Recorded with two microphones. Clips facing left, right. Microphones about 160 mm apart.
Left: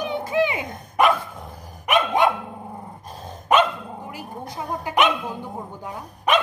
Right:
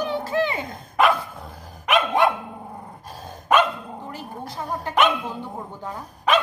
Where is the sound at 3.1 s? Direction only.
20° left (ahead or behind).